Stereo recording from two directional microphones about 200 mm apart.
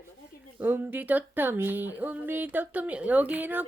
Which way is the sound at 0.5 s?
10° right (ahead or behind).